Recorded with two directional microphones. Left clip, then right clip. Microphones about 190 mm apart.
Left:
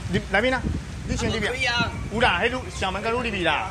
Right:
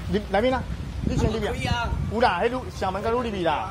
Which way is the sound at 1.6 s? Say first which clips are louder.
Left 5 dB; 40° right (ahead or behind).